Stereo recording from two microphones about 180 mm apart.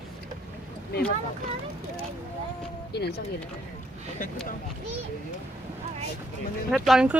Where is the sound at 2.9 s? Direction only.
65° left (ahead or behind).